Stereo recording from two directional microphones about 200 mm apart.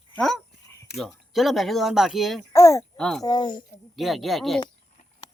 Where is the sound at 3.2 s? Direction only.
20° left (ahead or behind).